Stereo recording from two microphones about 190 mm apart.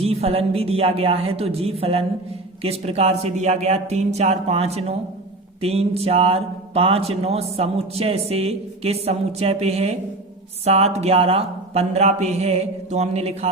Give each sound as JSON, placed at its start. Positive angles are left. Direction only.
{"t": 0.0, "sound": "speech", "side_deg": -30}